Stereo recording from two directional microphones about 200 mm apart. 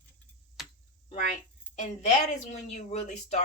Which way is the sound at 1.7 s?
35° left (ahead or behind).